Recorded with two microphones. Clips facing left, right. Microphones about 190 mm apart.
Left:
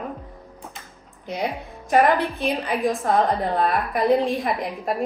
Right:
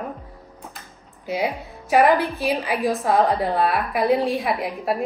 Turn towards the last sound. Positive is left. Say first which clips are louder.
# right 1 dB
turn(degrees=-5)  # may be behind; listen again after turning